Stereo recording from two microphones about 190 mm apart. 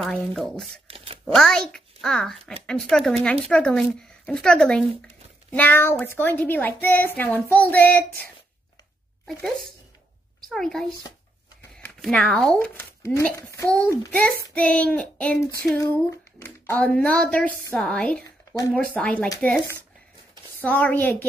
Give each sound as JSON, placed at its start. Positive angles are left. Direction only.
{"t": 0.0, "sound": "speech", "side_deg": 0}
{"t": 0.8, "sound": "a sound", "side_deg": -30}
{"t": 1.2, "sound": "a child's voice", "side_deg": 0}
{"t": 10.5, "sound": "a woman's voice", "side_deg": 0}